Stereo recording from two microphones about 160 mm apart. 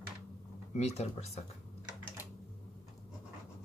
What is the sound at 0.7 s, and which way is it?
Speech, 40° left (ahead or behind).